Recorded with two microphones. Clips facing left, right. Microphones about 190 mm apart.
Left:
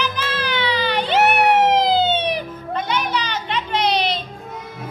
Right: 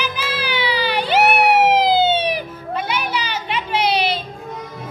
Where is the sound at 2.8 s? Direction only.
10° right (ahead or behind).